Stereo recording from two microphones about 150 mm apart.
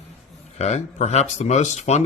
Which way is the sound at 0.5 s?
50° left (ahead or behind).